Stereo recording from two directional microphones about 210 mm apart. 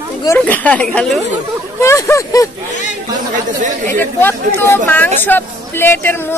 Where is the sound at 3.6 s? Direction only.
35° right (ahead or behind).